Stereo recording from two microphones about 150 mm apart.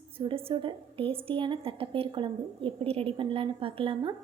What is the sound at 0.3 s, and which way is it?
A woman's voice, 35° right (ahead or behind).